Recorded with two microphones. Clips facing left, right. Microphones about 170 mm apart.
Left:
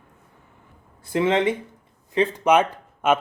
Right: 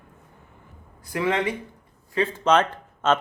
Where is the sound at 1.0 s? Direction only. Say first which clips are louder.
Left 4 dB; 25° left (ahead or behind).